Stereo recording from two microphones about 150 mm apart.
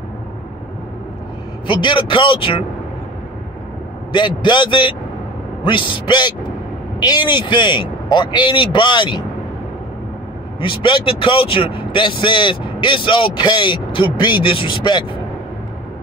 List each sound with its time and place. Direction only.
1.7 s speech: 35° left (ahead or behind)
4.1 s speech: 30° left (ahead or behind)
10.6 s speech: 35° left (ahead or behind)